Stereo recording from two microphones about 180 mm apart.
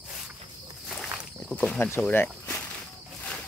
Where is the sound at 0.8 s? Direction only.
Centre (ahead or behind).